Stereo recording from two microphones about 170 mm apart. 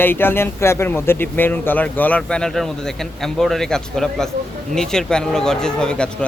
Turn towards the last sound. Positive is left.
turn(degrees=5)  # may be behind; listen again after turning